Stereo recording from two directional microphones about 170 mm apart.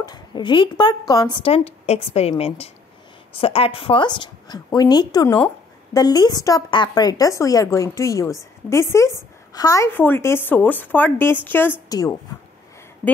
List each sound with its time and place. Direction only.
0.0 s speech: 25° left (ahead or behind)